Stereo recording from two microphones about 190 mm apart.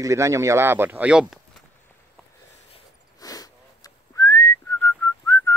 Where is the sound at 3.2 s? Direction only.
20° left (ahead or behind).